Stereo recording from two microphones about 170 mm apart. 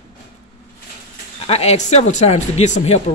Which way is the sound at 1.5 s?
40° left (ahead or behind).